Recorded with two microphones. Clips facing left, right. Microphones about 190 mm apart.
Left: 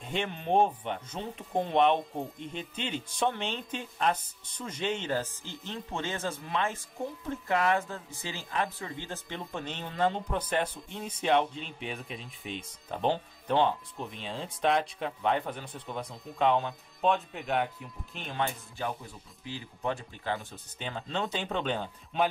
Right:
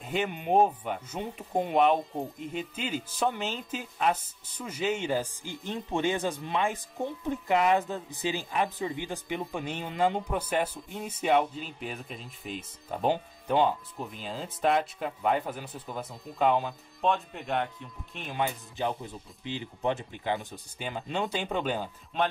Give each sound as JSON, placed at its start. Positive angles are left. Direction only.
{"t": 0.0, "sound": "speech", "side_deg": -5}
{"t": 18.8, "sound": "speech", "side_deg": -20}